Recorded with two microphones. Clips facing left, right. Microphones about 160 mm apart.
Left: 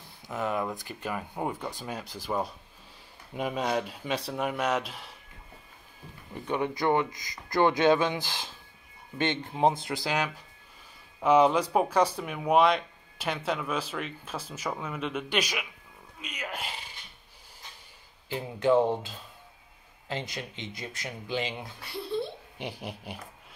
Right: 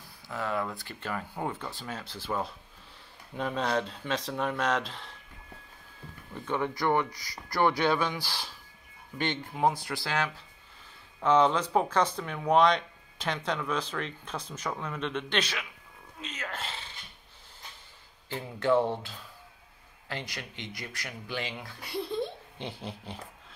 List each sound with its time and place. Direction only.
0.3 s speech: 20° left (ahead or behind)
6.3 s speech: 15° left (ahead or behind)
18.3 s speech: 15° left (ahead or behind)
22.1 s a sound: 10° left (ahead or behind)